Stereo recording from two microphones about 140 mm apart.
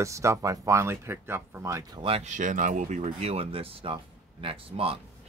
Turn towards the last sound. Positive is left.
turn(degrees=-40)  # may be behind; listen again after turning